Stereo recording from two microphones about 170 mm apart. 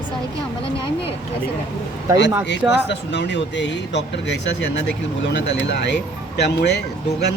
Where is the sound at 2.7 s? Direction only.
90° left.